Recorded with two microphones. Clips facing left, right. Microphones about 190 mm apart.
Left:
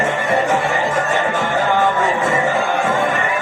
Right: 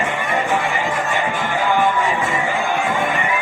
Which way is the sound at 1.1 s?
40° left (ahead or behind).